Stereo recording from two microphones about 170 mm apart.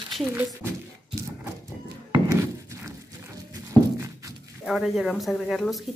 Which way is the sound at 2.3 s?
15° right (ahead or behind).